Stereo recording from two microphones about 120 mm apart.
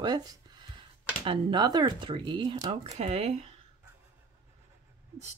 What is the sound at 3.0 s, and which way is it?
Speech, 60° right (ahead or behind).